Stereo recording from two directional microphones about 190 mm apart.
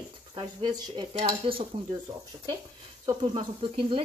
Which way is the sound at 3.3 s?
30° right (ahead or behind).